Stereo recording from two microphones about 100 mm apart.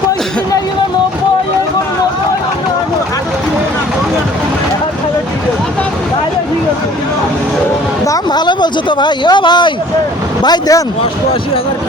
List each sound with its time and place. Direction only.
8.0 s speech: 40° left (ahead or behind)
10.4 s speech: 40° left (ahead or behind)